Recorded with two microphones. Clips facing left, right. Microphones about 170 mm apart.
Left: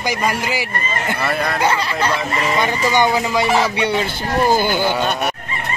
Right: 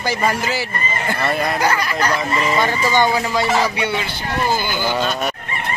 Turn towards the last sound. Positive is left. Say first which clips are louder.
# left 3 dB
turn(degrees=55)  # may be behind; listen again after turning